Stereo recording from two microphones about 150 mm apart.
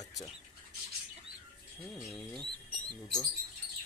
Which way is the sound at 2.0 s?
Centre (ahead or behind).